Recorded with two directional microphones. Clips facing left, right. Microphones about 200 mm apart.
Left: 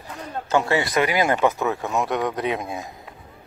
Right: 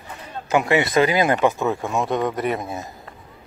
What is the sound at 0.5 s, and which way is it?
Speech, 15° right (ahead or behind).